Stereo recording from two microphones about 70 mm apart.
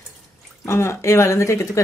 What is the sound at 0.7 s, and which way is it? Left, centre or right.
Speech, left.